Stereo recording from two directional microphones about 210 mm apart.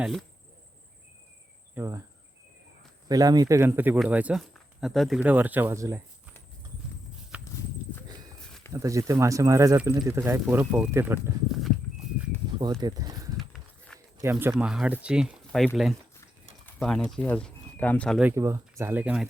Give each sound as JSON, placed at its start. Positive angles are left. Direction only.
{"t": 0.0, "sound": "speech", "side_deg": 0}
{"t": 1.7, "sound": "cricket", "side_deg": -10}
{"t": 3.1, "sound": "speech", "side_deg": -20}
{"t": 8.7, "sound": "speech", "side_deg": -15}
{"t": 12.8, "sound": "speech", "side_deg": -20}
{"t": 13.5, "sound": "a sound", "side_deg": 5}
{"t": 14.2, "sound": "speech", "side_deg": -10}
{"t": 18.2, "sound": "speech", "side_deg": -10}